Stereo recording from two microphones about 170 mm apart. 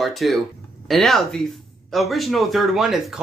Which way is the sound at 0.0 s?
Centre (ahead or behind).